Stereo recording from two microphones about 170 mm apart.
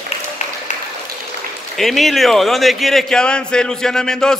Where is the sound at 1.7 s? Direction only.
Centre (ahead or behind).